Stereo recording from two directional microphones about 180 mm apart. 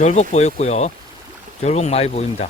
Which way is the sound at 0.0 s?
40° left (ahead or behind).